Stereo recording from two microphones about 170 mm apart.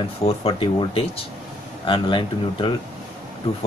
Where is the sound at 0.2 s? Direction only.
35° left (ahead or behind).